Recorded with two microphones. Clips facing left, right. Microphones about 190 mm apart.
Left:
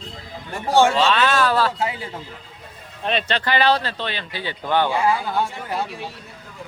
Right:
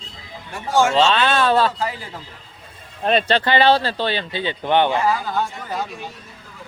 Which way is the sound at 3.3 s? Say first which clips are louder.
Right 1 dB; 30° right (ahead or behind).